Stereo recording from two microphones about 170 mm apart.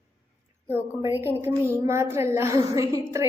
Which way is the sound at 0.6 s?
15° right (ahead or behind).